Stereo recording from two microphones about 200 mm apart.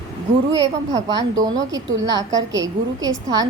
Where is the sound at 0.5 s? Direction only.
15° right (ahead or behind).